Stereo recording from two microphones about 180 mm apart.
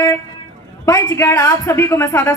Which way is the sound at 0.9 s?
20° left (ahead or behind).